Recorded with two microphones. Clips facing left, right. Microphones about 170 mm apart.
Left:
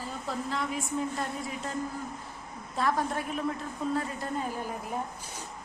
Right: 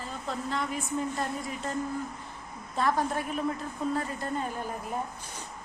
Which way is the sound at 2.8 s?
Centre (ahead or behind).